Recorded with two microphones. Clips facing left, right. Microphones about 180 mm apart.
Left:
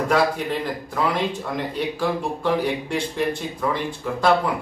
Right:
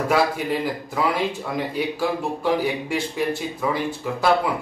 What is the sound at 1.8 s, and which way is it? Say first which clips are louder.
Speech: left 1 dB; 10° right (ahead or behind).